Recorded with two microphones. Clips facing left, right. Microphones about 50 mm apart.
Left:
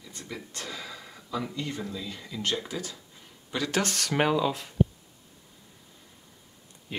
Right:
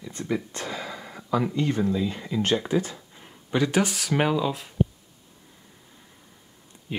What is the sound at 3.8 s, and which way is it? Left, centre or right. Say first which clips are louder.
Speech: right 2 dB; centre.